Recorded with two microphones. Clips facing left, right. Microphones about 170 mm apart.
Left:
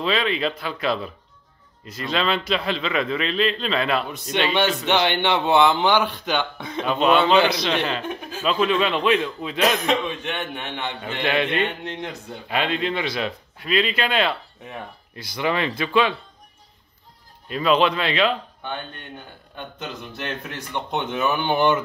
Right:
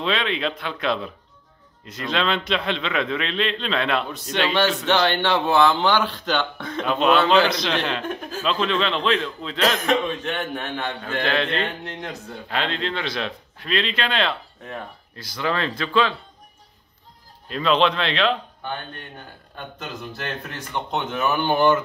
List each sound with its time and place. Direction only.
0.0 s a man's voice: 5° left (ahead or behind)
6.9 s a man's voice: centre (ahead or behind)
17.5 s a man's voice: 5° left (ahead or behind)
20.9 s a man's voice: 15° left (ahead or behind)